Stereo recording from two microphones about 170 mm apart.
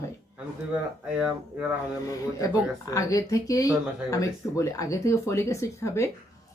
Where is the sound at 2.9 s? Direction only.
20° left (ahead or behind).